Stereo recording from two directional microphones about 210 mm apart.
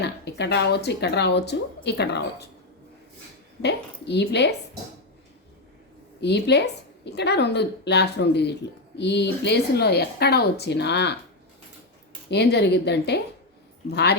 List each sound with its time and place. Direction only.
0.0 s a woman's voice: 55° left (ahead or behind)
3.6 s a woman's voice: 55° left (ahead or behind)
6.1 s a woman's voice: 55° left (ahead or behind)
12.3 s a woman's voice: 55° left (ahead or behind)